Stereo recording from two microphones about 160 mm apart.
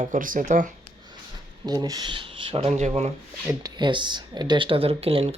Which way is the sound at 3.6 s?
30° right (ahead or behind).